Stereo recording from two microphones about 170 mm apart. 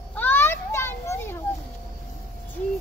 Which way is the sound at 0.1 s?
10° left (ahead or behind).